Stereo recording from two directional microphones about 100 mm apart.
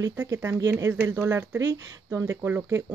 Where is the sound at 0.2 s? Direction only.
25° right (ahead or behind).